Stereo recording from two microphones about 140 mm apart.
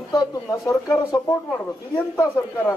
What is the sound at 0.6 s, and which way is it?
A man's voice, 25° left (ahead or behind).